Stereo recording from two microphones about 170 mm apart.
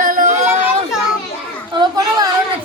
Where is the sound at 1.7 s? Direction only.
25° right (ahead or behind).